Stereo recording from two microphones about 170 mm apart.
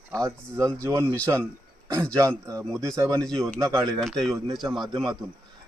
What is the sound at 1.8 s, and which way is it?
A man's voice, 15° right (ahead or behind).